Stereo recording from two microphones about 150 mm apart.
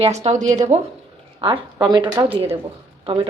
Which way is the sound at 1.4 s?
30° right (ahead or behind).